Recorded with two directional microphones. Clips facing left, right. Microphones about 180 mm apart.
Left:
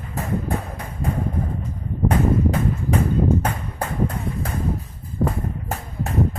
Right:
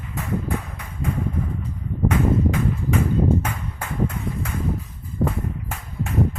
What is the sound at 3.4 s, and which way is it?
Clip-clop, 35° left (ahead or behind).